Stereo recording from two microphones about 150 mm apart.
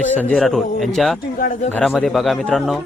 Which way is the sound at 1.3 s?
65° left (ahead or behind).